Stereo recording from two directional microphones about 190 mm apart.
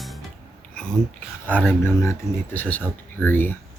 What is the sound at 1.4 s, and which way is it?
Speech, 10° left (ahead or behind).